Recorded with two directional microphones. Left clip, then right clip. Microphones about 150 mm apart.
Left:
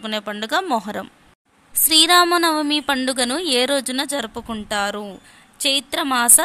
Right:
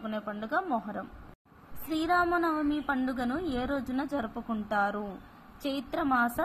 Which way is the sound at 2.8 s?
45° left (ahead or behind).